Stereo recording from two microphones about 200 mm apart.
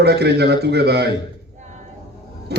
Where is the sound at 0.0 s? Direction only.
55° right (ahead or behind).